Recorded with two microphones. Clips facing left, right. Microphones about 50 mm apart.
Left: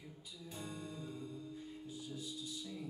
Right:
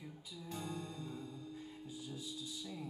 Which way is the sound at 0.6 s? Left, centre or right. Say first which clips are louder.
Even; centre.